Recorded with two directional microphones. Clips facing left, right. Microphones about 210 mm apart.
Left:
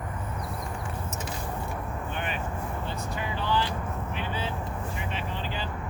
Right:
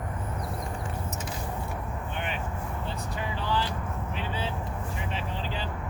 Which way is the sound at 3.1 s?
35° right (ahead or behind).